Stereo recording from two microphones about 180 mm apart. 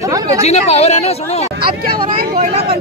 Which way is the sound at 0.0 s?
20° right (ahead or behind).